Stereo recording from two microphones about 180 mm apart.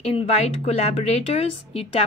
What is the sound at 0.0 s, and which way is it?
Speech, 35° left (ahead or behind).